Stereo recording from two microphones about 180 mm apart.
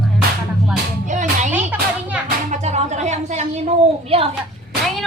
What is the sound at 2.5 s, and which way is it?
A woman's voice, 40° right (ahead or behind).